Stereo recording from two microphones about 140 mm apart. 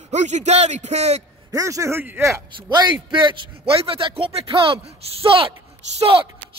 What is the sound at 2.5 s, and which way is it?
A man's voice, 30° right (ahead or behind).